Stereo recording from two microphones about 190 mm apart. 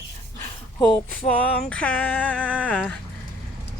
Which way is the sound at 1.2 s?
35° left (ahead or behind).